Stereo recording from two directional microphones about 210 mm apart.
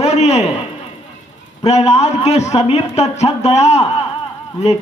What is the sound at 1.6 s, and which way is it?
A man's voice, 30° left (ahead or behind).